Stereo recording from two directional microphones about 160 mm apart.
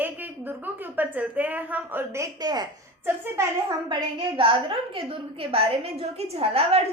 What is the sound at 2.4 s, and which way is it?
Speech, 25° right (ahead or behind).